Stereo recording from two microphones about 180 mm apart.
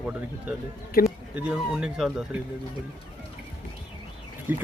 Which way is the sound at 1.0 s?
55° left (ahead or behind).